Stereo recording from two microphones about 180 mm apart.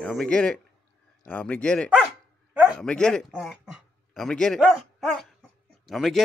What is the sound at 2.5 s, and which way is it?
Bow-wow, 10° right (ahead or behind).